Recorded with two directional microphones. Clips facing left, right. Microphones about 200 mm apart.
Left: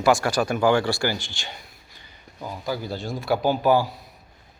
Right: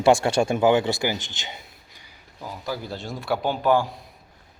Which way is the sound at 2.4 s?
Centre (ahead or behind).